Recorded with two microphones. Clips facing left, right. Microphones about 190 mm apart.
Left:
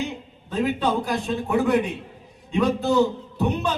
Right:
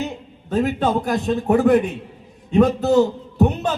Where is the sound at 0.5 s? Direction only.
45° right (ahead or behind).